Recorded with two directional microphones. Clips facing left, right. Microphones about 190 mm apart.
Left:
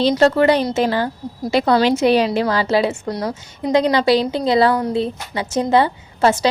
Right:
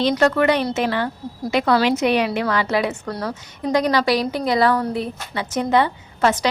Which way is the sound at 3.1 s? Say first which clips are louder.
Left 3 dB; 15° left (ahead or behind).